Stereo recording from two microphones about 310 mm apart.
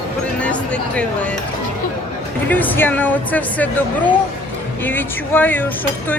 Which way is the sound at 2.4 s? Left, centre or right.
Centre.